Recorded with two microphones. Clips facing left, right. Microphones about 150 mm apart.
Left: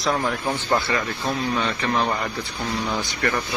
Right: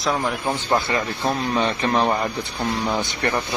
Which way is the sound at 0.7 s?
20° right (ahead or behind).